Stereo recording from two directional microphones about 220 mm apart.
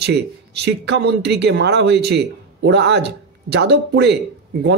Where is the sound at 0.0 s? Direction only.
50° right (ahead or behind).